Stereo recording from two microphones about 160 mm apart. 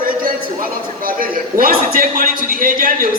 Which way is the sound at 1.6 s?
65° right (ahead or behind).